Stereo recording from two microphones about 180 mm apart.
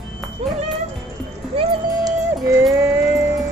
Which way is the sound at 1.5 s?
30° right (ahead or behind).